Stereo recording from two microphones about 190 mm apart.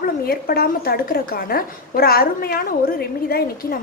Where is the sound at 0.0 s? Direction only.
50° left (ahead or behind).